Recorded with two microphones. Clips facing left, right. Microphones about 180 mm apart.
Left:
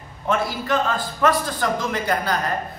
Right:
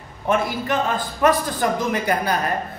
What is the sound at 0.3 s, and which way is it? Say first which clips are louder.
Speech: right 1 dB; 20° right (ahead or behind).